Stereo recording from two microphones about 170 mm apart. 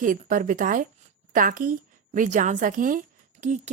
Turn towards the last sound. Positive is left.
turn(degrees=-50)  # may be behind; listen again after turning